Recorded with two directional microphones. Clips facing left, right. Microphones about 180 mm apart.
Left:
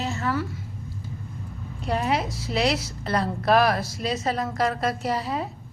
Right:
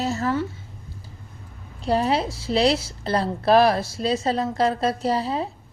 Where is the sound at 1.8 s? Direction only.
30° right (ahead or behind).